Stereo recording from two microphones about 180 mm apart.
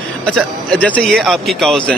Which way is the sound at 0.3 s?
10° left (ahead or behind).